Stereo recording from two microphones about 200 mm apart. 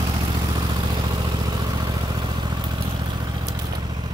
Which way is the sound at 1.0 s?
20° right (ahead or behind).